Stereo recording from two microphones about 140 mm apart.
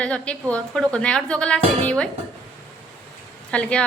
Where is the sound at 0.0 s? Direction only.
10° left (ahead or behind).